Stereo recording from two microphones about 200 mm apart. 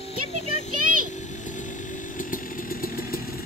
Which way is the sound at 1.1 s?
40° left (ahead or behind).